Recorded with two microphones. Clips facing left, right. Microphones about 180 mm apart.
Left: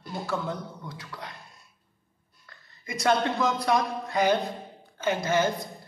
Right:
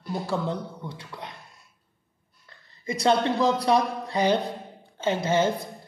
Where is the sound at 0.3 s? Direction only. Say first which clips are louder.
Right 2 dB; 30° right (ahead or behind).